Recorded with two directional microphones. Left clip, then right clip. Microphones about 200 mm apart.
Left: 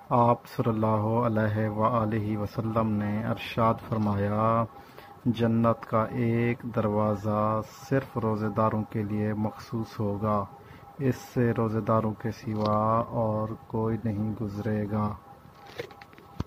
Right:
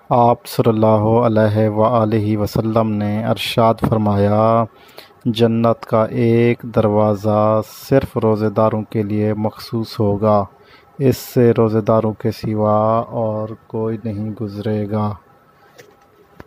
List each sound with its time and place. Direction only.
0.1 s mantra: 60° right (ahead or behind)
13.1 s speech: 35° right (ahead or behind)
14.6 s mantra: 55° right (ahead or behind)